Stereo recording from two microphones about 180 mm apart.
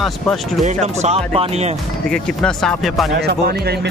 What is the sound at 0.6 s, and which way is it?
Speech, 40° right (ahead or behind).